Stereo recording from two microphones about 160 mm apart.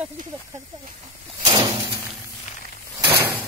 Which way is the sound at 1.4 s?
25° right (ahead or behind).